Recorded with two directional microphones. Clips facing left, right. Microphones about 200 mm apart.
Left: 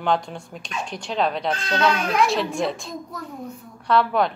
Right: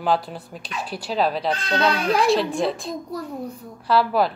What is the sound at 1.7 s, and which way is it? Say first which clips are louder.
Speech: even; 30° right (ahead or behind).